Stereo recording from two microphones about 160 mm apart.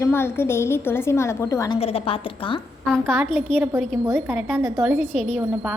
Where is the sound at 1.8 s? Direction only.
35° left (ahead or behind).